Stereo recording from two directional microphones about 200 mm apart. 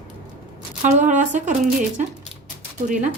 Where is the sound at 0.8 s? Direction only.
35° right (ahead or behind).